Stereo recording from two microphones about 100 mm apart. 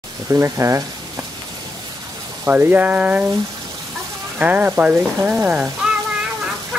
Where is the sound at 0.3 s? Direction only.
30° right (ahead or behind).